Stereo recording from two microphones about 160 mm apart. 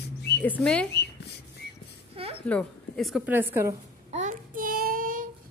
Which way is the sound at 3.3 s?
10° right (ahead or behind).